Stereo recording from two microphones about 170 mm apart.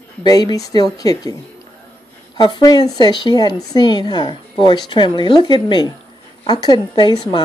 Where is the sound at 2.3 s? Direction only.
25° left (ahead or behind).